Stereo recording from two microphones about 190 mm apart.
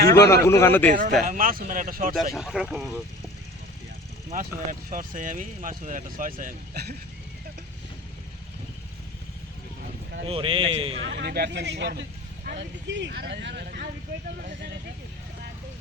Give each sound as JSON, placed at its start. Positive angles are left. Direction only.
{"t": 0.1, "sound": "a man's voice", "side_deg": 15}
{"t": 0.9, "sound": "speech", "side_deg": -40}
{"t": 2.4, "sound": "speech", "side_deg": 0}
{"t": 4.3, "sound": "speech", "side_deg": -45}
{"t": 6.4, "sound": "speech", "side_deg": -60}
{"t": 10.2, "sound": "a man's voice", "side_deg": -30}
{"t": 11.0, "sound": "speech", "side_deg": -65}